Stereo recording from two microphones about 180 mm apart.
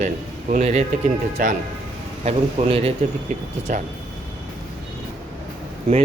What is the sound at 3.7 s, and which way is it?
Speech, 45° right (ahead or behind).